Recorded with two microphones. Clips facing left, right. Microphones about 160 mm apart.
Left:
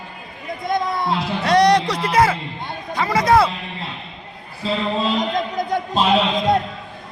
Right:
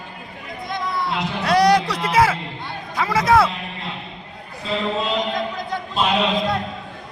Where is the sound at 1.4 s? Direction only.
5° right (ahead or behind).